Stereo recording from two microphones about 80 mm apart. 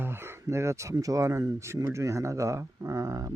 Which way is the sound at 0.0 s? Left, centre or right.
Right.